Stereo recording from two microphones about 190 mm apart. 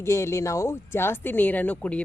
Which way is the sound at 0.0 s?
15° left (ahead or behind).